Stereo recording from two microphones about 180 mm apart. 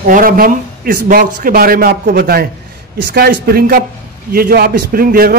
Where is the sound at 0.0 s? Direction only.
50° right (ahead or behind).